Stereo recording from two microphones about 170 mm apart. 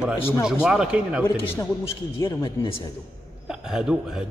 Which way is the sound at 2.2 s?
30° left (ahead or behind).